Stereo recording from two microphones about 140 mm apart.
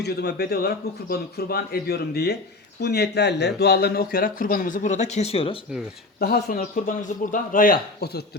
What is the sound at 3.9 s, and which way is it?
Speech, 90° left.